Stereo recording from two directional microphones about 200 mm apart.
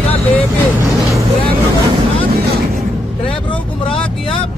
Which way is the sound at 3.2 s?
25° left (ahead or behind).